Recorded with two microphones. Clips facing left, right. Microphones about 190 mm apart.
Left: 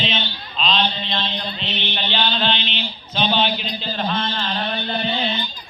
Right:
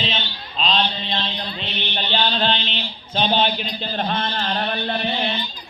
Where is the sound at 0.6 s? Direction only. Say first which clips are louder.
Even; 40° right (ahead or behind); by 5.1 s 55° right (ahead or behind).